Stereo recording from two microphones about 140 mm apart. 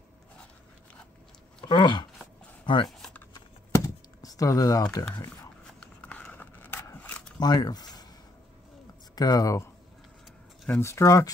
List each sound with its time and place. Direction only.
1.6 s speech: 35° left (ahead or behind)
3.3 s typing: 25° left (ahead or behind)
5.8 s a sound: 10° left (ahead or behind)
7.3 s a sound: 30° left (ahead or behind)
9.1 s speech: 25° left (ahead or behind)
10.8 s speech: 20° left (ahead or behind)